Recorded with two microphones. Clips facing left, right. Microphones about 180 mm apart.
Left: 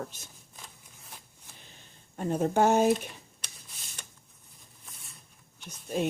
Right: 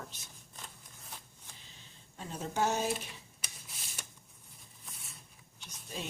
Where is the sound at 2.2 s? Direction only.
55° left (ahead or behind).